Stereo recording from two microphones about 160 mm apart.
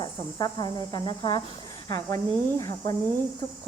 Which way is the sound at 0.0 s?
25° left (ahead or behind).